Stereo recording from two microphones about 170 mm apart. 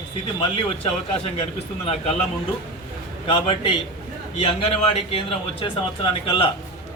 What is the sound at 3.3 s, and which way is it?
Speech, 35° left (ahead or behind).